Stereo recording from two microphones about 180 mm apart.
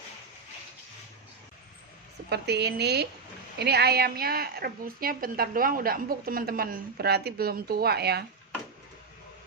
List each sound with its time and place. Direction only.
2.3 s a woman's voice: 65° right (ahead or behind)